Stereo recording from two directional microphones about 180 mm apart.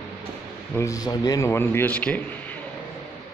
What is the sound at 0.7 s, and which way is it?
A man's voice, 15° left (ahead or behind).